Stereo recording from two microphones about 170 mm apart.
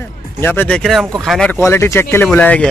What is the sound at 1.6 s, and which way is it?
Speech, 15° left (ahead or behind).